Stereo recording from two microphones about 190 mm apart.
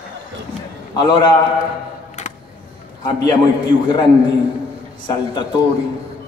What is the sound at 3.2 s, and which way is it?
Speech, 20° left (ahead or behind).